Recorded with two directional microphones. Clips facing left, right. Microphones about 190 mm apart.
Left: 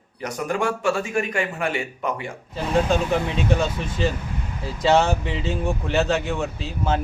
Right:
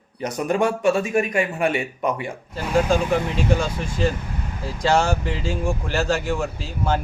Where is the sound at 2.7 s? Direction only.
Centre (ahead or behind).